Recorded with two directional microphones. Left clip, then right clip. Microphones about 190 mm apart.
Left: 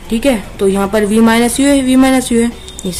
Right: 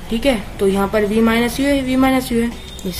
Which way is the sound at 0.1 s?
20° left (ahead or behind).